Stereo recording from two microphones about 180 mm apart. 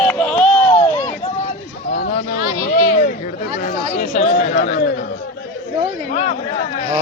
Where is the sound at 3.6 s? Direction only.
45° left (ahead or behind).